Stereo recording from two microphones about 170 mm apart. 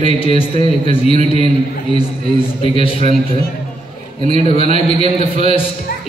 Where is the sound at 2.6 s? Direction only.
35° left (ahead or behind).